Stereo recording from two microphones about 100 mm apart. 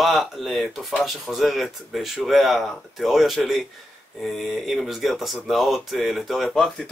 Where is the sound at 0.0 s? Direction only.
Centre (ahead or behind).